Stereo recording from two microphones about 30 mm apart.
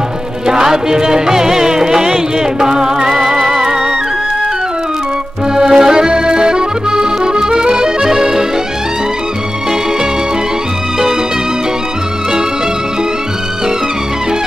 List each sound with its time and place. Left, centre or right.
0.5 s music: right
5.5 s accordion: centre